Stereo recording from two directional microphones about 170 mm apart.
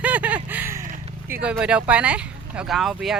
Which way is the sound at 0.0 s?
10° right (ahead or behind).